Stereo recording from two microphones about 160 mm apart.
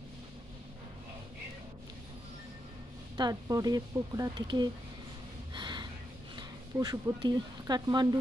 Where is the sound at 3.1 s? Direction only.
25° right (ahead or behind).